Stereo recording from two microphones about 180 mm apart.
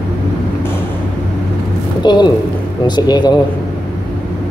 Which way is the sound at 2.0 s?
25° left (ahead or behind).